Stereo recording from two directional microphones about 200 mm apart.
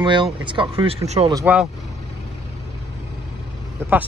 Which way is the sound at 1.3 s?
10° right (ahead or behind).